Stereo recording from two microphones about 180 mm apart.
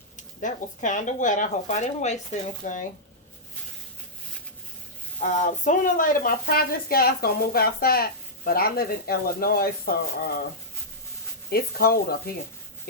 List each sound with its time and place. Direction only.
0.3 s speech: 45° left (ahead or behind)
5.2 s speech: 45° left (ahead or behind)
11.5 s speech: 55° left (ahead or behind)